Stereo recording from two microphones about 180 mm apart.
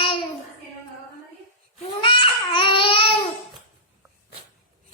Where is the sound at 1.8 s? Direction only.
25° left (ahead or behind).